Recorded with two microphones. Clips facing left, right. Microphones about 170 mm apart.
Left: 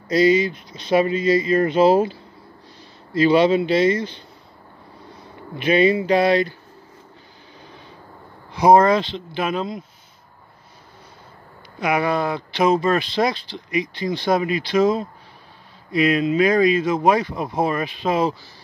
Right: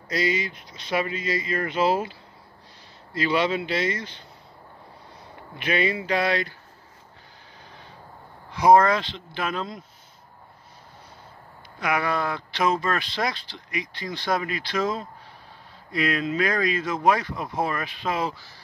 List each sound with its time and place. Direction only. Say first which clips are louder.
0.1 s speech: left 10 dB; 30° left (ahead or behind)
3.2 s speech: left 8 dB; 30° left (ahead or behind)
5.6 s speech: left 8 dB; 30° left (ahead or behind)
8.5 s speech: left 3 dB; 25° left (ahead or behind)
11.8 s speech: left 5 dB; 20° left (ahead or behind)